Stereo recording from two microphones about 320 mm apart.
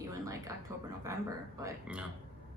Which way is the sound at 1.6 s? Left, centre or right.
Centre.